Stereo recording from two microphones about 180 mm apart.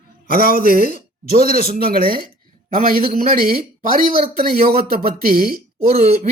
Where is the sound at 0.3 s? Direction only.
55° right (ahead or behind).